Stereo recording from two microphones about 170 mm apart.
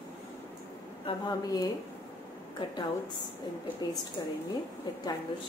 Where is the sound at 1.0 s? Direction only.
25° left (ahead or behind).